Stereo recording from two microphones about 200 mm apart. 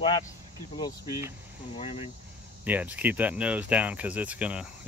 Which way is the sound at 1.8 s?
30° left (ahead or behind).